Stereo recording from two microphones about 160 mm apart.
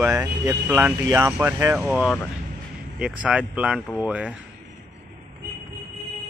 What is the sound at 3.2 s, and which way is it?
Speech, 5° right (ahead or behind).